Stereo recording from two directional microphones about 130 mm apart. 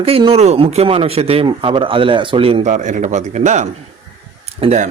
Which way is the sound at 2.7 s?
75° right (ahead or behind).